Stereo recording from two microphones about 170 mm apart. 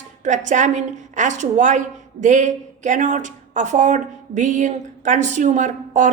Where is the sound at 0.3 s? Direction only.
45° right (ahead or behind).